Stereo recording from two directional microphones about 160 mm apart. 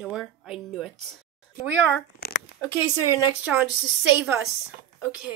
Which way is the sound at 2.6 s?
15° right (ahead or behind).